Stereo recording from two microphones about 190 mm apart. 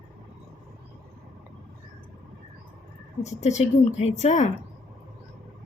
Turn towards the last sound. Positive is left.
turn(degrees=35)  # may be behind; listen again after turning